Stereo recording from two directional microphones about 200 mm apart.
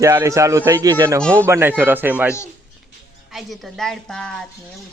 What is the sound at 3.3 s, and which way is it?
Speech, centre (ahead or behind).